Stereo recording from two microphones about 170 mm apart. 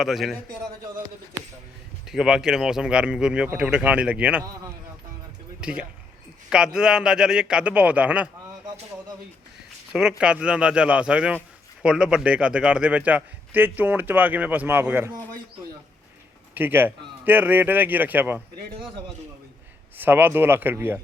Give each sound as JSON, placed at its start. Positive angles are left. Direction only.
{"t": 0.0, "sound": "speech", "side_deg": 0}
{"t": 2.0, "sound": "speech", "side_deg": -5}
{"t": 5.5, "sound": "speech", "side_deg": -5}
{"t": 9.9, "sound": "a man's voice", "side_deg": -5}
{"t": 16.6, "sound": "a man's voice", "side_deg": -10}
{"t": 20.0, "sound": "a man's voice", "side_deg": -10}